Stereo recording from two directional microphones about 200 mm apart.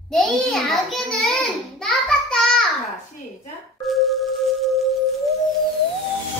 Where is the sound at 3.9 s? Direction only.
Centre (ahead or behind).